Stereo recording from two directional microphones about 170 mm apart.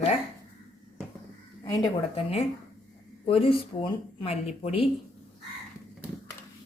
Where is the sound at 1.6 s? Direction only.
20° left (ahead or behind).